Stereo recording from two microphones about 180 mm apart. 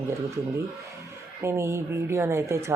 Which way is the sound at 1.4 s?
15° right (ahead or behind).